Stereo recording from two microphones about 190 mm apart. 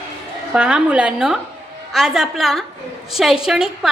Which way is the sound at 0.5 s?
5° right (ahead or behind).